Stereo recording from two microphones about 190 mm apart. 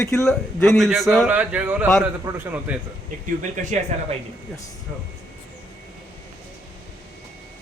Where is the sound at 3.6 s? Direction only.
45° right (ahead or behind).